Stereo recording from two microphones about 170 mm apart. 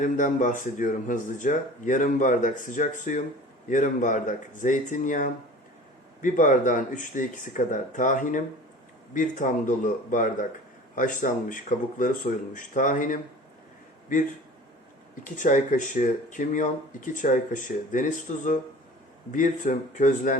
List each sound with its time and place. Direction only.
0.0 s speech: 50° left (ahead or behind)
15.2 s speech: 50° left (ahead or behind)